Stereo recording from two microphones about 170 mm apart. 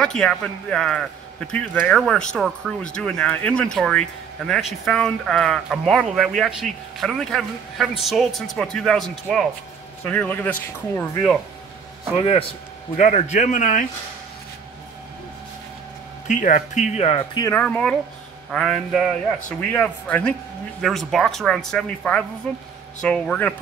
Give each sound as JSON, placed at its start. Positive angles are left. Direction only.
{"t": 0.0, "sound": "speech", "side_deg": 5}
{"t": 12.9, "sound": "a man's voice", "side_deg": 45}
{"t": 16.3, "sound": "a man's voice", "side_deg": 50}
{"t": 17.3, "sound": "speech", "side_deg": 20}
{"t": 17.6, "sound": "speech", "side_deg": 5}